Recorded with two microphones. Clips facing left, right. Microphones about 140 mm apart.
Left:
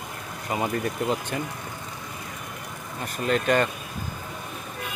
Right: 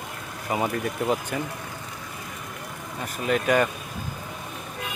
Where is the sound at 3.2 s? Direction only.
10° right (ahead or behind).